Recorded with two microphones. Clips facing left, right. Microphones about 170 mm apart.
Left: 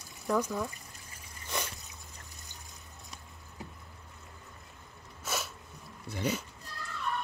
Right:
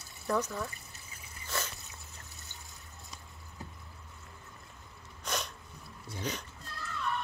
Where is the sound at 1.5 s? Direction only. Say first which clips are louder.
Left 1 dB; 15° left (ahead or behind).